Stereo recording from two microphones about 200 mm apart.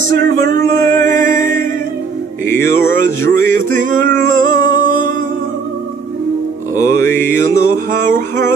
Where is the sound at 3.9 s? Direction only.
65° right (ahead or behind).